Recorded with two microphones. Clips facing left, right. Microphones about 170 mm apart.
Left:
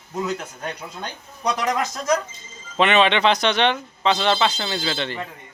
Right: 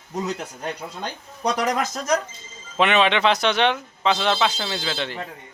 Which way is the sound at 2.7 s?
5° right (ahead or behind).